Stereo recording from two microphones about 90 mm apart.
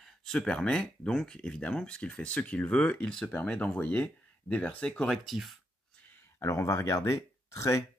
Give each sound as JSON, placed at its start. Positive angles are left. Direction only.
{"t": 0.0, "sound": "speech", "side_deg": 5}
{"t": 6.4, "sound": "speech", "side_deg": 35}